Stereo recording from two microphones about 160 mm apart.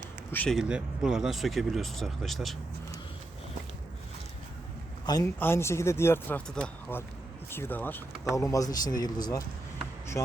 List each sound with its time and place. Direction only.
0.3 s speech: 10° left (ahead or behind)
0.5 s speech: 5° right (ahead or behind)
5.4 s speech: 15° left (ahead or behind)